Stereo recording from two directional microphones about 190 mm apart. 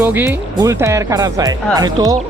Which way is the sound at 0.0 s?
10° right (ahead or behind).